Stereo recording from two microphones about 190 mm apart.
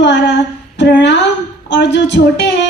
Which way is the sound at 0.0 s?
70° left (ahead or behind).